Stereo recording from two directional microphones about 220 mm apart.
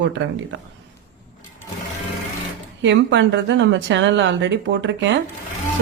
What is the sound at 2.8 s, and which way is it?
A woman's voice, 55° right (ahead or behind).